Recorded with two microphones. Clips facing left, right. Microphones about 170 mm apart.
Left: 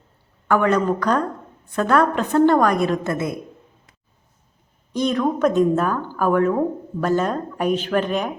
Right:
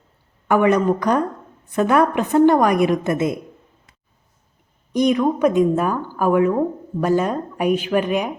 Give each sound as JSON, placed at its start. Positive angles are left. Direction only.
{"t": 0.4, "sound": "a woman's voice", "side_deg": -15}
{"t": 4.9, "sound": "a woman's voice", "side_deg": -15}